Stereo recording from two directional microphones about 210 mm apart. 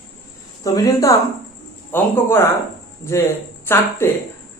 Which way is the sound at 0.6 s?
15° left (ahead or behind).